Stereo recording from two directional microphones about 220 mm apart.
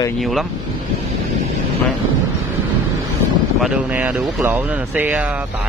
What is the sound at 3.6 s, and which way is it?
Speech, 5° right (ahead or behind).